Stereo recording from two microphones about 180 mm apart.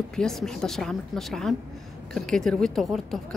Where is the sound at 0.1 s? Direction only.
Centre (ahead or behind).